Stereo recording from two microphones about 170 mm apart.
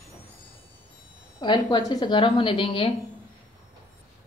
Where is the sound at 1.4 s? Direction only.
25° left (ahead or behind).